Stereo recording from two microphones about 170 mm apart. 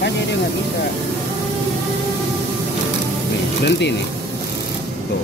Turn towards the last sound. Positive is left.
turn(degrees=90)